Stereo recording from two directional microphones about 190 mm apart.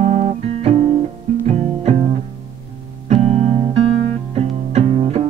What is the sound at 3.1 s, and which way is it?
Music, 35° right (ahead or behind).